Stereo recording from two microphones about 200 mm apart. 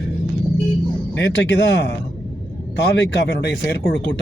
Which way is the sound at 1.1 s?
60° left (ahead or behind).